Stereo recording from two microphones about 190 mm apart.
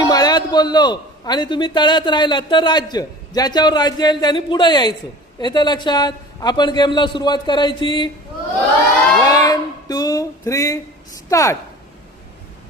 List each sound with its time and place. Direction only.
0.0 s a man's voice: 20° left (ahead or behind)
9.2 s music: 20° left (ahead or behind)
11.3 s speech: 15° left (ahead or behind)